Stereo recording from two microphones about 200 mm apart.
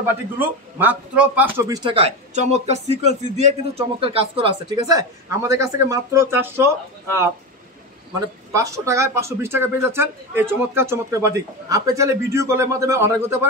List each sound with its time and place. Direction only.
0.7 s a man's voice: 5° right (ahead or behind)
8.5 s speech: 15° right (ahead or behind)